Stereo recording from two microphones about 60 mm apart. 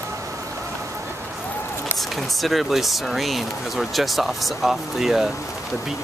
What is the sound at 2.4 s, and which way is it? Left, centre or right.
Speech, centre.